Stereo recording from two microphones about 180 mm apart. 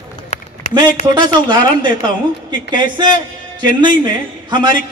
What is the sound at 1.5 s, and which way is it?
A man's voice, 25° right (ahead or behind).